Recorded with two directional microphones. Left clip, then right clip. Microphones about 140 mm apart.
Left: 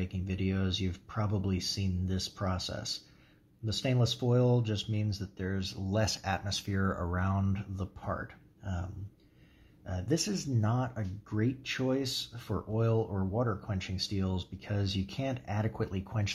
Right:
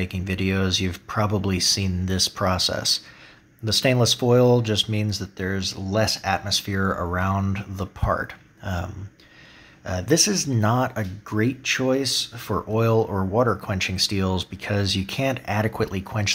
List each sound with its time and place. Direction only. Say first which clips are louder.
0.0 s speech: right 11 dB; 20° right (ahead or behind)
9.8 s speech: right 13 dB; 25° right (ahead or behind)